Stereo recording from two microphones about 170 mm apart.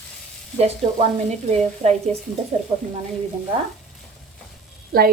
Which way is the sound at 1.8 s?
35° right (ahead or behind).